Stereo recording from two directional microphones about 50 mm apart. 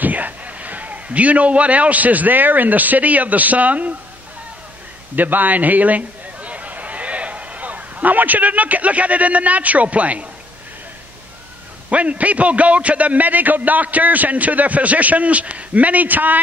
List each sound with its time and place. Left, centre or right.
0.0 s a man's voice: right
5.1 s a man's voice: right
11.9 s a man's voice: right